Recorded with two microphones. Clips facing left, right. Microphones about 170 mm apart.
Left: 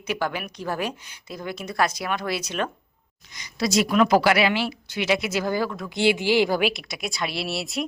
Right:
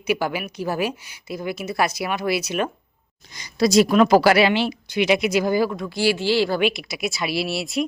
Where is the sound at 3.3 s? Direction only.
35° right (ahead or behind); by 5.7 s 15° right (ahead or behind).